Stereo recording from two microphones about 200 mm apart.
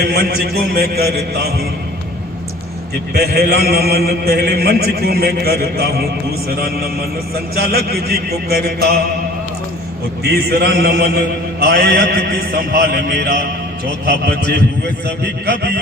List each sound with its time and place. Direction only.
0.1 s a man's voice: 50° right (ahead or behind)
3.2 s a man's voice: 50° right (ahead or behind)
10.3 s a man's voice: 50° right (ahead or behind)